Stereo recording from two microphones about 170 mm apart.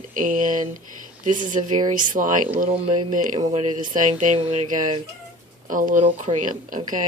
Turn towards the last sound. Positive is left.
turn(degrees=-50)  # may be behind; listen again after turning